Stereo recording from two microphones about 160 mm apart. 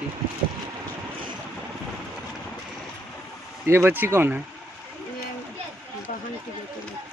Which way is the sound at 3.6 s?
15° right (ahead or behind).